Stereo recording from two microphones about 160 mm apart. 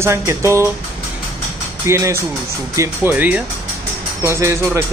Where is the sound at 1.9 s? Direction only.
15° right (ahead or behind).